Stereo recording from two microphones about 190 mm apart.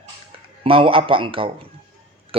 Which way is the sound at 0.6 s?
30° right (ahead or behind).